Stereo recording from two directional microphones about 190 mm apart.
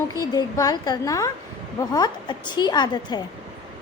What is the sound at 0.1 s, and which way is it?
A woman's voice, 20° left (ahead or behind).